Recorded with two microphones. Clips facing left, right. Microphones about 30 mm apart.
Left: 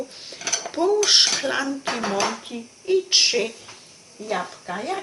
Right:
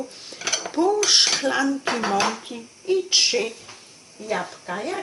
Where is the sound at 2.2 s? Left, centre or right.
Centre.